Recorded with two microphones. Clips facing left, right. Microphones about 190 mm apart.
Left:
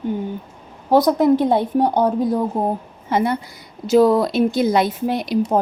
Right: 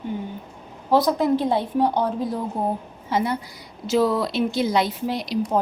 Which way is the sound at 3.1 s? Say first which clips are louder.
Left 4 dB; 55° left (ahead or behind).